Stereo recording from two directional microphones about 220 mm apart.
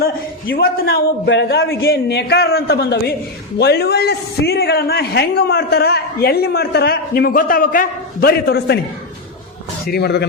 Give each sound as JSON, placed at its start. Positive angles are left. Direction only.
{"t": 0.5, "sound": "a man's voice", "side_deg": 45}
{"t": 9.8, "sound": "a man's voice", "side_deg": 45}